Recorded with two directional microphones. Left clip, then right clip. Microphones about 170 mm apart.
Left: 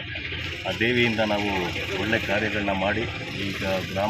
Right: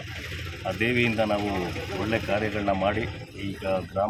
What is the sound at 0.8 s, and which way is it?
Speech, 10° right (ahead or behind).